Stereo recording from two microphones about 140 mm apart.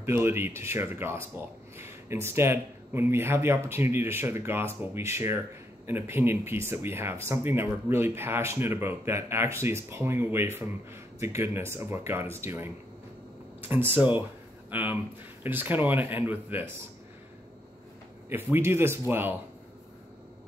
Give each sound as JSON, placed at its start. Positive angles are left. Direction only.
{"t": 0.0, "sound": "speech", "side_deg": -15}
{"t": 18.3, "sound": "speech", "side_deg": -15}